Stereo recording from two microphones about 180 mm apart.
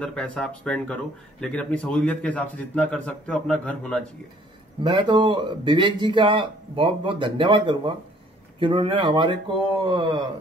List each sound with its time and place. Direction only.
0.0 s a man's voice: 5° left (ahead or behind)
4.8 s speech: 25° right (ahead or behind)